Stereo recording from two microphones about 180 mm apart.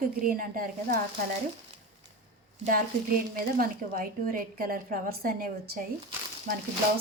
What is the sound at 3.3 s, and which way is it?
A woman's voice, 50° right (ahead or behind).